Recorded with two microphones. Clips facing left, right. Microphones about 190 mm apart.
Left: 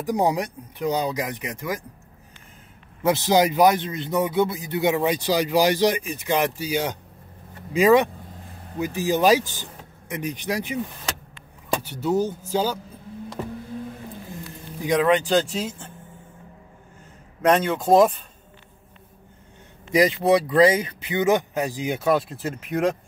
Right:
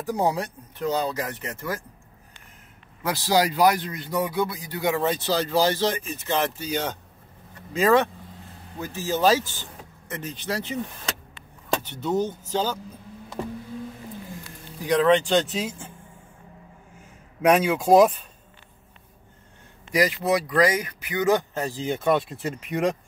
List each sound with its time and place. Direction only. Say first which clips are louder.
0.0 s speech: left 2 dB; 15° left (ahead or behind)
3.0 s a man's voice: left 4 dB; 20° left (ahead or behind)
14.8 s speech: even; 15° left (ahead or behind); by 15.9 s centre (ahead or behind)
17.4 s speech: even; 5° right (ahead or behind)
19.9 s speech: left 4 dB; 25° left (ahead or behind); by 22.9 s centre (ahead or behind)